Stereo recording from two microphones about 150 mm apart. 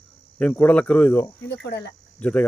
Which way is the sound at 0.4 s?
10° left (ahead or behind).